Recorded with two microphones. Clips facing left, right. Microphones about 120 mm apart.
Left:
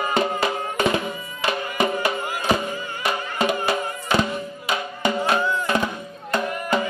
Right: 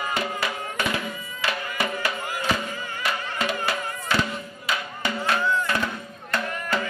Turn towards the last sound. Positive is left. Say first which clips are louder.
# left 4 dB
turn(degrees=15)  # may be behind; listen again after turning